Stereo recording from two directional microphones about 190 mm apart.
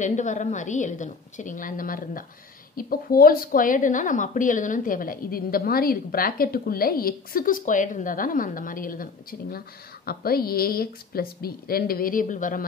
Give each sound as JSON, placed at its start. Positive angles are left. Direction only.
{"t": 0.0, "sound": "a woman's voice", "side_deg": 40}